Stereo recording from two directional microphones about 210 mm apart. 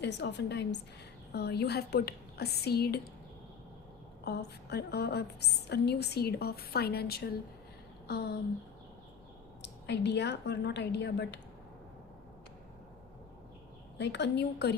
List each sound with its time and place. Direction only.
0.0 s a woman's voice: 55° left (ahead or behind)
4.3 s a woman's voice: 50° left (ahead or behind)
8.0 s a sound: 50° left (ahead or behind)
9.6 s a woman's voice: 55° left (ahead or behind)
14.0 s a woman's voice: 55° left (ahead or behind)